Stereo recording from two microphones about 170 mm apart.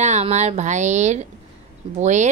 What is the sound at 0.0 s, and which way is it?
A woman's voice, 40° right (ahead or behind).